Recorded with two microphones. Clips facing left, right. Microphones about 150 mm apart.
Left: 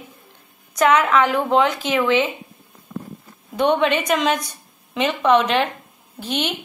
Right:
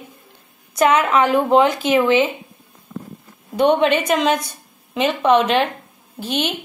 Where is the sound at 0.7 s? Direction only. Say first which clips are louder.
Right 1 dB; 30° right (ahead or behind).